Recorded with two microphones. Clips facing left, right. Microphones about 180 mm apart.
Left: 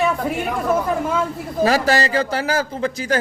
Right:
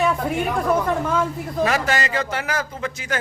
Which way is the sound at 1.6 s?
35° left (ahead or behind).